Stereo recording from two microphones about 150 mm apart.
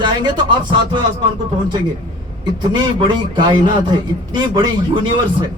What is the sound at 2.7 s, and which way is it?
A man's voice, 30° right (ahead or behind).